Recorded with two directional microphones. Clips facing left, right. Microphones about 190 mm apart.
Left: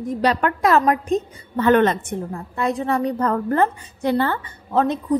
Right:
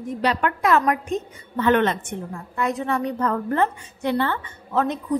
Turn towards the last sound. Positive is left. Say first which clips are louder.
# left 3 dB
turn(degrees=30)  # may be behind; listen again after turning